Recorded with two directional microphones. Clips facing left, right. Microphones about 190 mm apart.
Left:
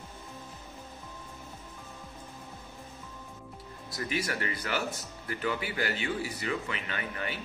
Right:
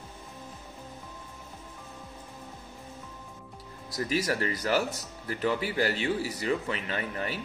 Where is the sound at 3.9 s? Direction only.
35° right (ahead or behind).